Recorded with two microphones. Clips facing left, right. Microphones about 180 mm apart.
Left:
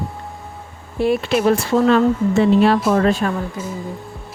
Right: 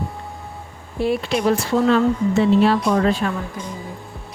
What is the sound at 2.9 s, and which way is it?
Speech, 45° left (ahead or behind).